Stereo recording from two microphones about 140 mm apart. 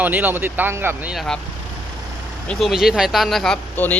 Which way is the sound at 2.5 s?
Centre (ahead or behind).